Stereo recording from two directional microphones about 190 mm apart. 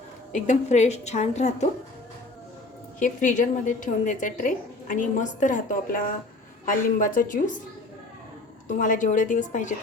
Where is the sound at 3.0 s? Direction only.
40° left (ahead or behind).